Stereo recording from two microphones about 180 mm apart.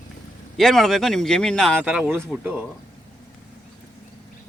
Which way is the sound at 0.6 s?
Centre (ahead or behind).